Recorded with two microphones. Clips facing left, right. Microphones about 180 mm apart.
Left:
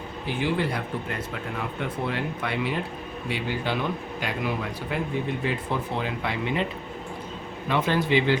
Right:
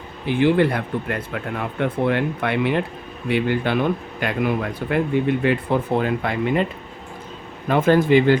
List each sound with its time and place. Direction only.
0.3 s speech: 60° right (ahead or behind)
7.7 s speech: 50° right (ahead or behind)